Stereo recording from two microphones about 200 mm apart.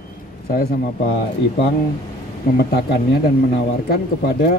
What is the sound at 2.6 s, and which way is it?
Speech, 50° left (ahead or behind).